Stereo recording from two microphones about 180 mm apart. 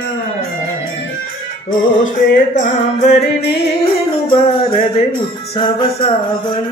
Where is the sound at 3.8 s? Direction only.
30° left (ahead or behind).